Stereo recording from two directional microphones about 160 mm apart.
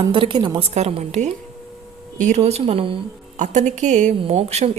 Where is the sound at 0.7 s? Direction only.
40° right (ahead or behind).